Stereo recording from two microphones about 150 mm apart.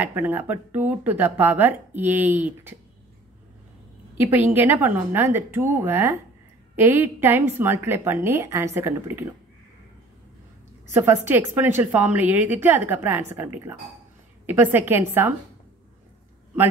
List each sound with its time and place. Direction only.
0.0 s a woman's voice: 15° right (ahead or behind)
4.2 s a woman's voice: 15° right (ahead or behind)
10.9 s a woman's voice: 15° right (ahead or behind)